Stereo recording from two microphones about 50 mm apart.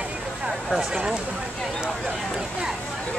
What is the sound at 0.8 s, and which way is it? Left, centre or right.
Speech, centre.